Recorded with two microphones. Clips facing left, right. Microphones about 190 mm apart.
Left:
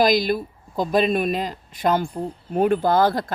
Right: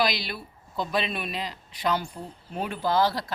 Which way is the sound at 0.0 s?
45° left (ahead or behind).